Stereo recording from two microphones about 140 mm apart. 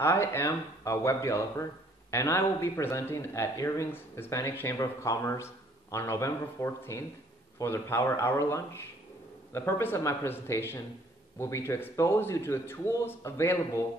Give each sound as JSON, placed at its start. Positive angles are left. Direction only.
{"t": 0.0, "sound": "a man's voice", "side_deg": 20}